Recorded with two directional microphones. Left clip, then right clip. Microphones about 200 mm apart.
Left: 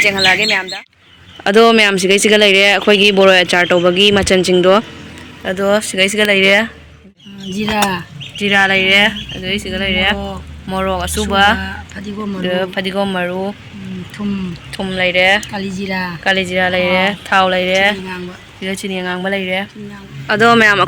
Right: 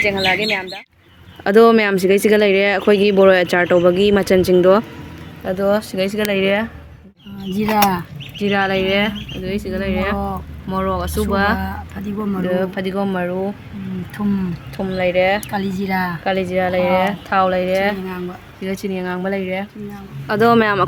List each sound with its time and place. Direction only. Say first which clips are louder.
0.0 s speech: left 5 dB; centre (ahead or behind)
7.5 s speech: even; 40° right (ahead or behind)
8.4 s speech: left 6 dB; 5° left (ahead or behind)
12.0 s speech: left 2 dB; 55° right (ahead or behind)
12.5 s speech: left 4 dB; centre (ahead or behind)
14.7 s speech: left 3 dB; 5° right (ahead or behind)
15.5 s speech: even; 40° right (ahead or behind)
16.2 s speech: left 7 dB; centre (ahead or behind)